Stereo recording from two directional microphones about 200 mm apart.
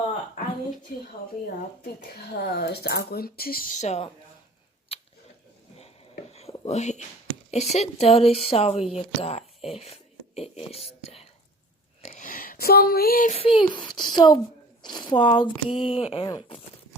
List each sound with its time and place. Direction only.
2.4 s speech: 55° left (ahead or behind); by 4.1 s 35° left (ahead or behind)
4.9 s a sound: 30° left (ahead or behind)
6.3 s whispering: 30° left (ahead or behind)
7.5 s speech: 35° left (ahead or behind)
10.8 s whispering: 30° left (ahead or behind)
12.0 s a sound: 40° left (ahead or behind)
13.3 s a child's voice: 25° left (ahead or behind)